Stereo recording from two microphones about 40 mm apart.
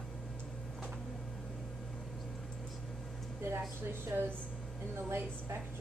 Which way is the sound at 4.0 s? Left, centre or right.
Right.